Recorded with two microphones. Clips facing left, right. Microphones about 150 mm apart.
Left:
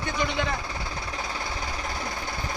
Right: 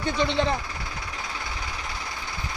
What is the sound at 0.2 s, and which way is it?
Speech, 30° right (ahead or behind).